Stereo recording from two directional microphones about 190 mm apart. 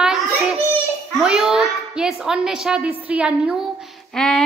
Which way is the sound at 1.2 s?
5° right (ahead or behind).